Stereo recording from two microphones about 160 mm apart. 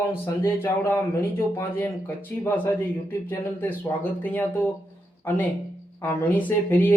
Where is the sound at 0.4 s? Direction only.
15° left (ahead or behind).